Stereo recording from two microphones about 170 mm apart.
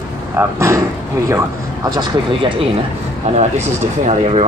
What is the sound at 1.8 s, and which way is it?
Speech, 20° right (ahead or behind).